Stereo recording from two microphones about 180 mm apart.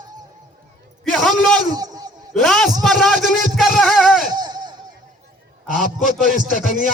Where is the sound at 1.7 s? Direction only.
20° right (ahead or behind).